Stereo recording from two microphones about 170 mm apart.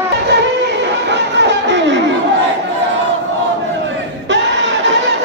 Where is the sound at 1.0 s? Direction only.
90° right.